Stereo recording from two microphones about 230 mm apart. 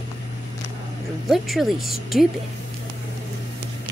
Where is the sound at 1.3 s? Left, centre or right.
Centre.